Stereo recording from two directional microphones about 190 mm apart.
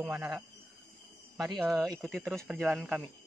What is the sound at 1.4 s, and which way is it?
Speech, centre (ahead or behind).